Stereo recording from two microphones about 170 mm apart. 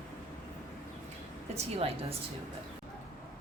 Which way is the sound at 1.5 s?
35° right (ahead or behind).